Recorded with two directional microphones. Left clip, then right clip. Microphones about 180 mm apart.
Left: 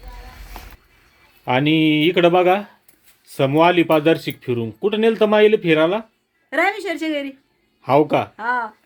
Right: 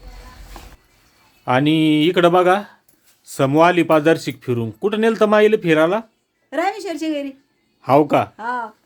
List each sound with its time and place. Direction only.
1.5 s speech: 5° right (ahead or behind)